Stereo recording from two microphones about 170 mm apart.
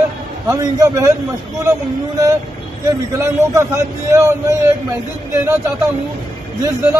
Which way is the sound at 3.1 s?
15° right (ahead or behind).